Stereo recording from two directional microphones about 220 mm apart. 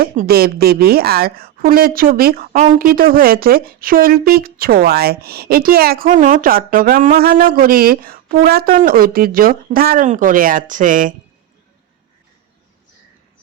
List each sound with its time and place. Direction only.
0.0 s a woman's voice: 45° right (ahead or behind)